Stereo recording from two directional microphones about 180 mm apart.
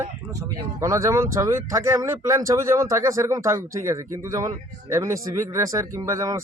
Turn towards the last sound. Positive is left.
turn(degrees=-20)  # may be behind; listen again after turning